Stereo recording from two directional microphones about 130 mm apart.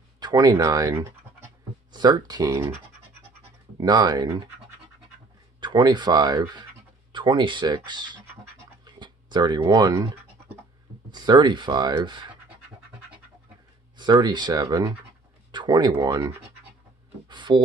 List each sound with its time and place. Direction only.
0.2 s speech: 30° right (ahead or behind)
3.8 s speech: 30° right (ahead or behind)
5.6 s speech: 35° right (ahead or behind)
8.8 s a sound: 35° right (ahead or behind)
11.1 s speech: 35° right (ahead or behind)
13.9 s speech: 35° right (ahead or behind)
17.3 s a sound: 35° right (ahead or behind)